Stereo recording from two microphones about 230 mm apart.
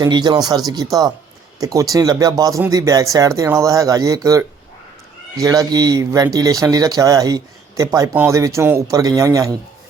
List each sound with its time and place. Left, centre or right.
0.0 s speech: centre